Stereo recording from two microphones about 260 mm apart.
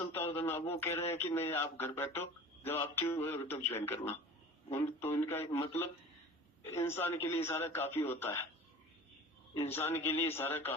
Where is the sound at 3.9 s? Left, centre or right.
Left.